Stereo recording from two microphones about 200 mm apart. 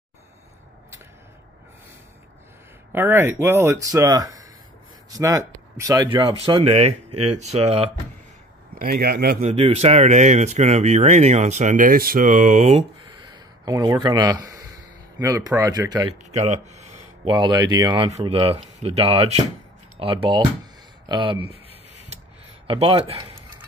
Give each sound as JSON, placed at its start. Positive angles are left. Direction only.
{"t": 2.9, "sound": "speech", "side_deg": -10}
{"t": 6.3, "sound": "speech", "side_deg": -30}
{"t": 8.7, "sound": "speech", "side_deg": -50}
{"t": 9.4, "sound": "speech", "side_deg": -30}
{"t": 13.7, "sound": "speech", "side_deg": -20}
{"t": 16.3, "sound": "speech", "side_deg": -35}
{"t": 22.7, "sound": "speech", "side_deg": -25}